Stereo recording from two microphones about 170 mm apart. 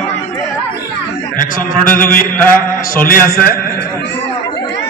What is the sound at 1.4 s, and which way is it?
Speech, 55° left (ahead or behind).